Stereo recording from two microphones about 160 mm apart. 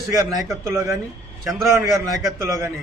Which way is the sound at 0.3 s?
20° right (ahead or behind).